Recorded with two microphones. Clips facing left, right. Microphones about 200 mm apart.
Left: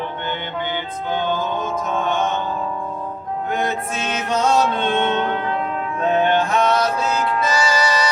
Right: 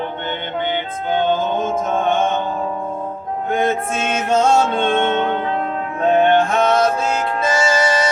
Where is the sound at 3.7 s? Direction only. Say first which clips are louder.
Right 4 dB; 50° right (ahead or behind).